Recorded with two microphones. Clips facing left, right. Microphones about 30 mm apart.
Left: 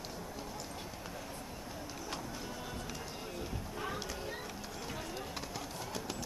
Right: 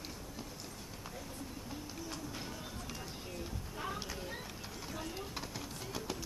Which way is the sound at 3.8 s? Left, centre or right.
Centre.